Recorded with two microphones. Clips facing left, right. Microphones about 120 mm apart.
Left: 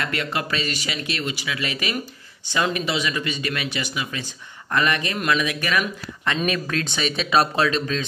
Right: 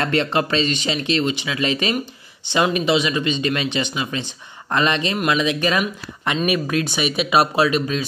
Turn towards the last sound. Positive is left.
turn(degrees=-10)  # may be behind; listen again after turning